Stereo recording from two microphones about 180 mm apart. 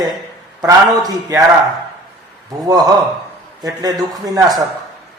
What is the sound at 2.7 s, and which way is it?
A man's voice, 20° right (ahead or behind).